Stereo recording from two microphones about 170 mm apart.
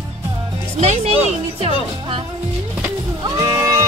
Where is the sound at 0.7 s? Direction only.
40° right (ahead or behind).